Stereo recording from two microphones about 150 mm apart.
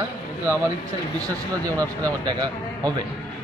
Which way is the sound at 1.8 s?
25° right (ahead or behind).